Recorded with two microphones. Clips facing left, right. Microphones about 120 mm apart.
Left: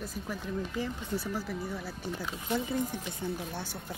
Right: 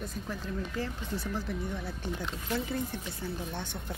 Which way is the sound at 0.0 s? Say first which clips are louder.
Even; 10° left (ahead or behind).